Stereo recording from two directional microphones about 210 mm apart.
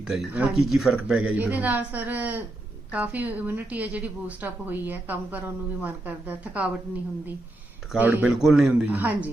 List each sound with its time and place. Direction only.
0.1 s a woman's voice: 5° right (ahead or behind)
8.0 s speech: 5° right (ahead or behind)